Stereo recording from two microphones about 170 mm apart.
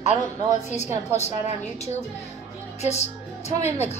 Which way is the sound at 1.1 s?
40° left (ahead or behind).